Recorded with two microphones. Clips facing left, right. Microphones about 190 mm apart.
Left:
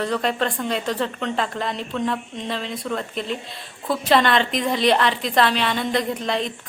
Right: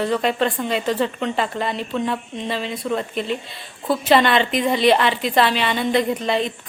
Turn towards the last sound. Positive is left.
turn(degrees=0)  # may be behind; listen again after turning